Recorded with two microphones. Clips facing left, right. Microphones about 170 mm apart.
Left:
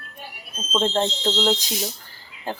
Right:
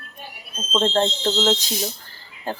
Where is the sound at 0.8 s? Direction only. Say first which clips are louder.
Right 2 dB; 10° left (ahead or behind).